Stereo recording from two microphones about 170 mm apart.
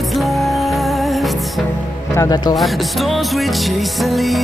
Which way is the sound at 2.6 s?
Centre (ahead or behind).